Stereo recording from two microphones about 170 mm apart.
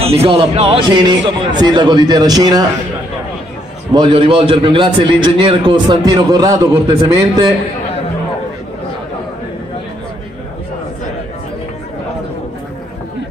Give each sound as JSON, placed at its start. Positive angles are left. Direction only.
{"t": 0.0, "sound": "a man's voice", "side_deg": -35}
{"t": 3.9, "sound": "a man's voice", "side_deg": -30}